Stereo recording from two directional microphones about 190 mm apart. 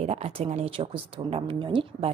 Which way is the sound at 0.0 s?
35° right (ahead or behind).